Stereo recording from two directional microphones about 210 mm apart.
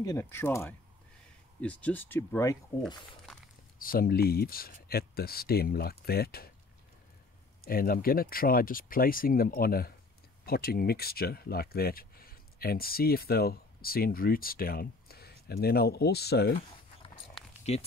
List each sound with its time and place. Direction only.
0.0 s speech: 15° left (ahead or behind)
3.3 s walk: centre (ahead or behind)
3.8 s speech: 45° left (ahead or behind)
7.6 s speech: 45° left (ahead or behind)
17.7 s speech: 30° left (ahead or behind)